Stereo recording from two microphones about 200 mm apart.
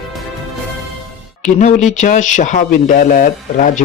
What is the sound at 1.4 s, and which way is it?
Speech, 35° left (ahead or behind).